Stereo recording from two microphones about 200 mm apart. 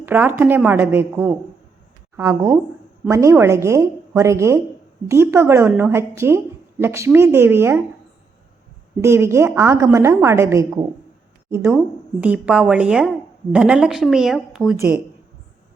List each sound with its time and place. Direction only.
0.0 s a woman's voice: 10° right (ahead or behind)
9.0 s a woman's voice: 15° right (ahead or behind)
14.8 s a woman's voice: 10° right (ahead or behind)